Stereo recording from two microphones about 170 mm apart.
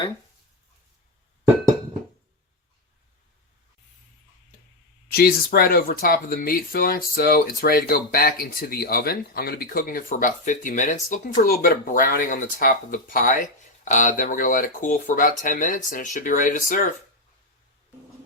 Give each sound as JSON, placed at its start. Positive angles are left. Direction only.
{"t": 5.1, "sound": "speech", "side_deg": 60}